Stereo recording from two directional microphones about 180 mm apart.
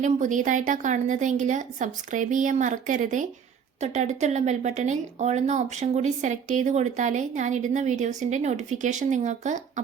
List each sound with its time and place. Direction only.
0.0 s a woman's voice: 45° right (ahead or behind)